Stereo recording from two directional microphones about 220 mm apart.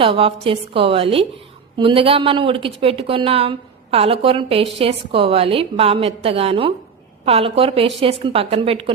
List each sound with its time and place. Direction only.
0.0 s speech: 25° right (ahead or behind)